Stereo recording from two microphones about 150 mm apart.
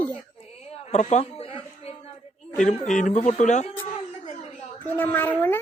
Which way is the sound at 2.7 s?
55° left (ahead or behind).